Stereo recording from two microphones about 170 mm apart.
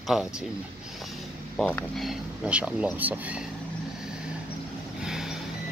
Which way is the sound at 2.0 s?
5° right (ahead or behind).